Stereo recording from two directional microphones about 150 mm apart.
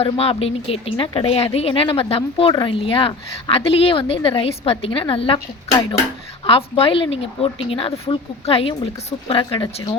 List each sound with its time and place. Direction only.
0.0 s a woman's voice: 40° left (ahead or behind)
6.4 s a woman's voice: 40° left (ahead or behind)